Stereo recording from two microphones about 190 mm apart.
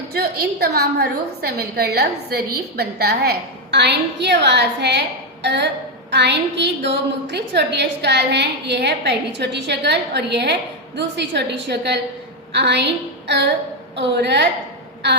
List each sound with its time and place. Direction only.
0.1 s a woman's voice: 55° right (ahead or behind)
12.5 s a sound: 65° right (ahead or behind)
13.9 s a woman's voice: 65° right (ahead or behind)